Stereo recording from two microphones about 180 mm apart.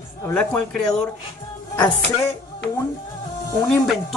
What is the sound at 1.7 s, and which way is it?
Music, 25° left (ahead or behind).